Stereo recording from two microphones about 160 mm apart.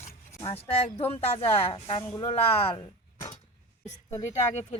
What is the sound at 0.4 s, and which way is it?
Speech, 35° left (ahead or behind).